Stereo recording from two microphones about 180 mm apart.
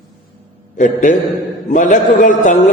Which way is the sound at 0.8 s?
45° left (ahead or behind).